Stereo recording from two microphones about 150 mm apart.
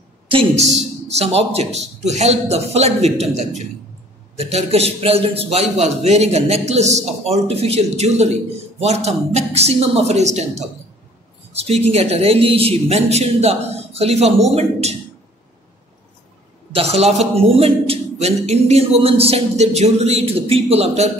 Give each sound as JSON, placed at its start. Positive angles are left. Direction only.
{"t": 0.3, "sound": "a man's voice", "side_deg": -40}
{"t": 16.7, "sound": "a man's voice", "side_deg": -45}